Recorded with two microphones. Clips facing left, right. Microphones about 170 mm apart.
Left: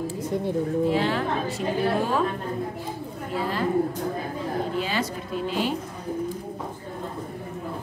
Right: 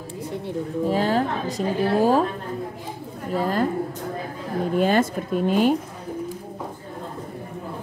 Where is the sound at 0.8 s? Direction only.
40° right (ahead or behind).